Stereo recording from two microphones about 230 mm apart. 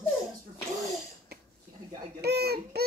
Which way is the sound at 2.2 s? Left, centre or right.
Right.